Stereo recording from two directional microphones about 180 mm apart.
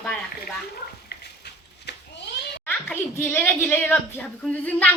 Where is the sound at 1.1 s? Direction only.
60° left (ahead or behind).